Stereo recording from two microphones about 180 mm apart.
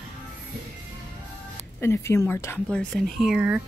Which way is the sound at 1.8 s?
15° left (ahead or behind).